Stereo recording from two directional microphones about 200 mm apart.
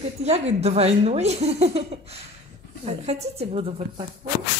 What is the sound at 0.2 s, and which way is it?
Speech, 35° right (ahead or behind).